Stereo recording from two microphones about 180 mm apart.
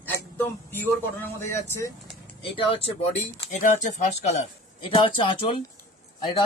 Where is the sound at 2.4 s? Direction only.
30° left (ahead or behind).